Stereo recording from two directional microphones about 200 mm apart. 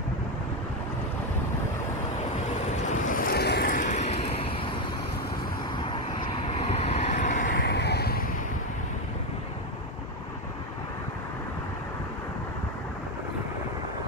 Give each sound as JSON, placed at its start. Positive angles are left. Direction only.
{"t": 2.9, "sound": "vehicle", "side_deg": 45}
{"t": 6.4, "sound": "vehicle", "side_deg": 30}